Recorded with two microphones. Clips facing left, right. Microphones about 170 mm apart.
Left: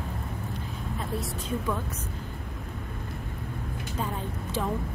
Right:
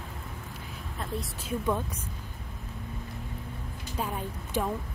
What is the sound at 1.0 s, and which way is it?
Speech, centre (ahead or behind).